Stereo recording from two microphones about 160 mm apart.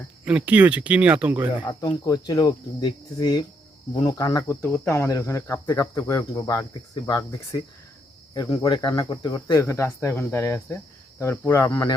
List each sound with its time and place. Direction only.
0.3 s speech: 10° right (ahead or behind)
1.5 s speech: 30° left (ahead or behind); by 11.7 s 15° left (ahead or behind)
11.7 s speech: 30° left (ahead or behind)